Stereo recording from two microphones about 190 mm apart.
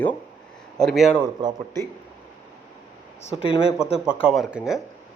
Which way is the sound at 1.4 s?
20° right (ahead or behind).